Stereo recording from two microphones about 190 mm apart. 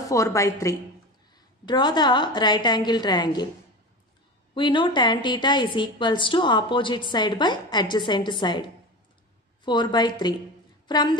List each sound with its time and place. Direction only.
0.1 s a woman's voice: 15° left (ahead or behind)
4.6 s a woman's voice: 25° left (ahead or behind)
9.7 s a woman's voice: 25° left (ahead or behind)